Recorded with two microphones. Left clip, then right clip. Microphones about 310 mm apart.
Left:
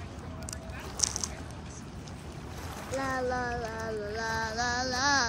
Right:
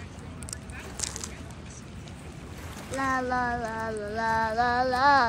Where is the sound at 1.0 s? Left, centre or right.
Centre.